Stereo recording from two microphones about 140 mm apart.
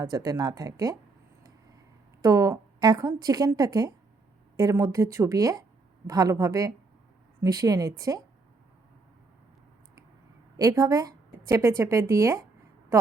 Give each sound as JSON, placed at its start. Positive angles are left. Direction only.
{"t": 0.0, "sound": "speech", "side_deg": -25}
{"t": 2.2, "sound": "a woman's voice", "side_deg": -25}
{"t": 10.6, "sound": "speech", "side_deg": -25}